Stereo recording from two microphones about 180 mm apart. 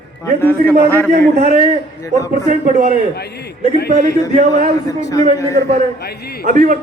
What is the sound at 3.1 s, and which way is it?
Speech, 65° left (ahead or behind).